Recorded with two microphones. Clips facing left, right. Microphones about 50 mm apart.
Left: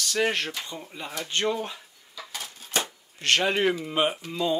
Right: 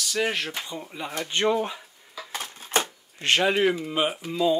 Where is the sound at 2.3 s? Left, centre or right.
Right.